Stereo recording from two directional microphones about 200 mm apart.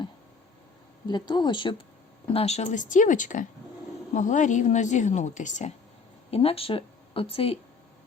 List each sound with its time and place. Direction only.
1.0 s a woman's voice: 20° left (ahead or behind)